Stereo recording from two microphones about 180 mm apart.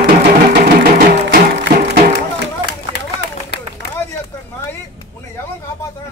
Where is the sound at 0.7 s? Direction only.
60° right (ahead or behind).